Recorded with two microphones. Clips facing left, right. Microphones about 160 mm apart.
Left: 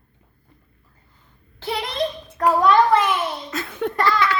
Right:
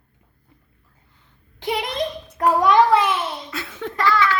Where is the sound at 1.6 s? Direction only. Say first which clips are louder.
Even; 15° right (ahead or behind).